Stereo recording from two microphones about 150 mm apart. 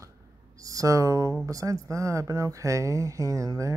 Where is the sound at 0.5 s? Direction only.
20° right (ahead or behind).